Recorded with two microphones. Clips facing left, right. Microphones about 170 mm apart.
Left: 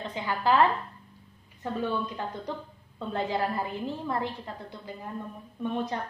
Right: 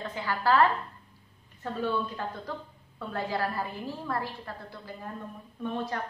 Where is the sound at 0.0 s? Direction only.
20° left (ahead or behind).